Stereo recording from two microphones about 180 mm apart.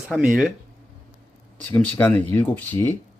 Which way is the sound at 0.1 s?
Centre (ahead or behind).